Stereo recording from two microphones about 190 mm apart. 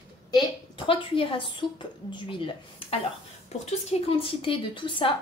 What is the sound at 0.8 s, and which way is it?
Speech, 25° left (ahead or behind).